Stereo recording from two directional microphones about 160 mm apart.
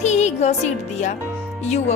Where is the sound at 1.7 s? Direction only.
45° left (ahead or behind).